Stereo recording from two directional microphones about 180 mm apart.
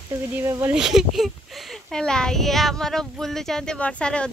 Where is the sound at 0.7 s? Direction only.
Centre (ahead or behind).